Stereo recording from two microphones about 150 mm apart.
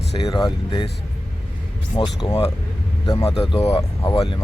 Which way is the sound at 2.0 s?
30° left (ahead or behind).